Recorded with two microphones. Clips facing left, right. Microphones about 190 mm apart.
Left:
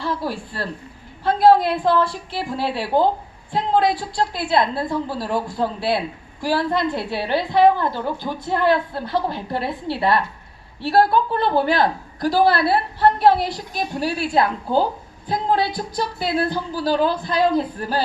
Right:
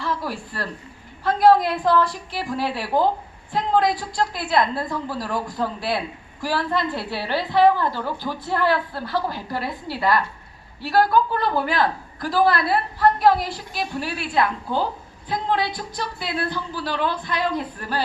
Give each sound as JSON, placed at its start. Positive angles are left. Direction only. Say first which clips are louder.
{"t": 0.0, "sound": "a woman's voice", "louder": "left 2 dB", "side_deg": 30}
{"t": 6.7, "sound": "a woman's voice", "louder": "left 3 dB", "side_deg": 15}